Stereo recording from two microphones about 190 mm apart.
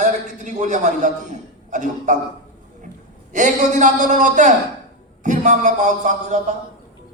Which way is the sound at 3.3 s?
40° right (ahead or behind).